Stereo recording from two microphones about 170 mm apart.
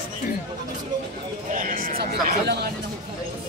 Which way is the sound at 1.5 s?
50° right (ahead or behind).